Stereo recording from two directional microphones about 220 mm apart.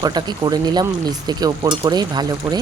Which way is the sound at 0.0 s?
20° right (ahead or behind).